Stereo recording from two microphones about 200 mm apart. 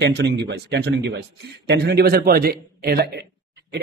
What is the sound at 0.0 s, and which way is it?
A man's voice, 60° right (ahead or behind).